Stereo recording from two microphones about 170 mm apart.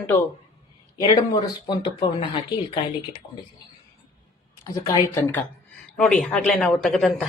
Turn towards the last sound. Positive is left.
turn(degrees=0)  # may be behind; listen again after turning